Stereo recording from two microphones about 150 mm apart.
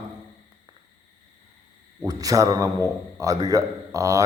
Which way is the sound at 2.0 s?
25° right (ahead or behind).